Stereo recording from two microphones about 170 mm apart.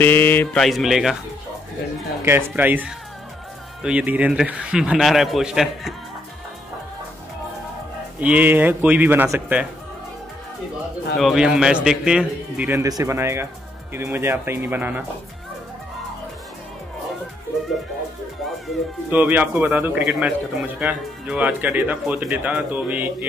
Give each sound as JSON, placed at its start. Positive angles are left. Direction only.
{"t": 0.0, "sound": "a man's voice", "side_deg": 10}
{"t": 2.2, "sound": "a man's voice", "side_deg": -15}
{"t": 8.2, "sound": "speech", "side_deg": -10}
{"t": 11.1, "sound": "a man's voice", "side_deg": 0}
{"t": 19.0, "sound": "speech", "side_deg": -10}